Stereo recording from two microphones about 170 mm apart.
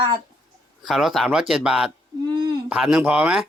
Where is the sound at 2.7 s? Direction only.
5° right (ahead or behind).